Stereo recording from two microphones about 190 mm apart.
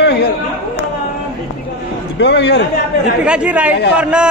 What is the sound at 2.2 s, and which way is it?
Speech, 65° left (ahead or behind).